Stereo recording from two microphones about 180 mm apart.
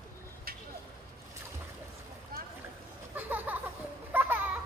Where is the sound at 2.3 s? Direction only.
55° right (ahead or behind).